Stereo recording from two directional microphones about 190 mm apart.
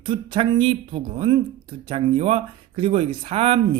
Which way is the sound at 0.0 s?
25° right (ahead or behind).